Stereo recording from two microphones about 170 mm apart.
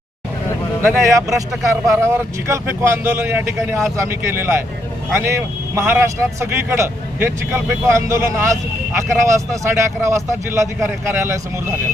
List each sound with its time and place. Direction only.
0.8 s speech: 15° right (ahead or behind)